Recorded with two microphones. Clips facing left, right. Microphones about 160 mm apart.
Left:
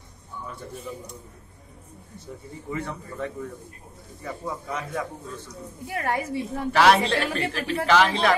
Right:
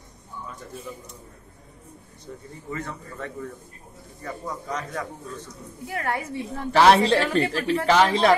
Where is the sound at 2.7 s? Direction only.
15° left (ahead or behind).